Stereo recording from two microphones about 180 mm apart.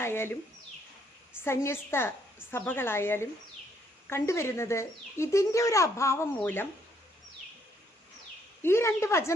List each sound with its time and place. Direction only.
0.0 s speech: 15° left (ahead or behind)
1.5 s speech: 15° left (ahead or behind)
8.6 s speech: 15° left (ahead or behind)